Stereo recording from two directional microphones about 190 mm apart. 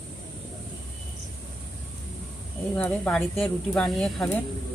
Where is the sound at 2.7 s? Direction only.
10° left (ahead or behind).